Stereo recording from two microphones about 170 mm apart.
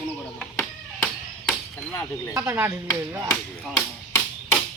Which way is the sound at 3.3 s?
10° left (ahead or behind).